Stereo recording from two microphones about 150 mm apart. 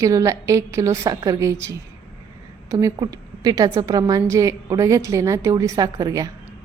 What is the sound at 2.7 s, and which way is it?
A woman's voice, 20° right (ahead or behind).